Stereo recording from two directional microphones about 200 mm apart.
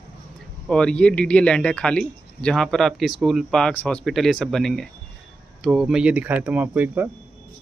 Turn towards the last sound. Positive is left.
turn(degrees=-10)  # may be behind; listen again after turning